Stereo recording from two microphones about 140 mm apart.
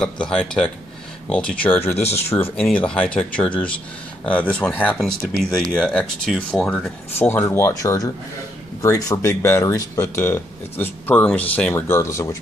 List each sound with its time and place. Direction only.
0.0 s speech: 5° left (ahead or behind)
6.7 s speech: 15° left (ahead or behind)